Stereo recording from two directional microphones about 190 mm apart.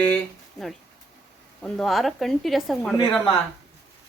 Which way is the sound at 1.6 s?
Centre (ahead or behind).